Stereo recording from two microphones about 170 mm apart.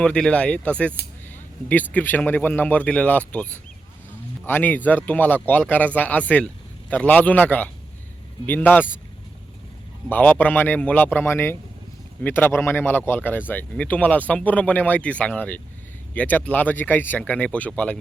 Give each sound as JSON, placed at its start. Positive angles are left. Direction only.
{"t": 0.0, "sound": "speech", "side_deg": 5}
{"t": 10.1, "sound": "speech", "side_deg": 10}